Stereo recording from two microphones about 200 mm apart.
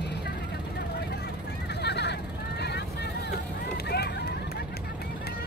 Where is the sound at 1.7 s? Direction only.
55° left (ahead or behind).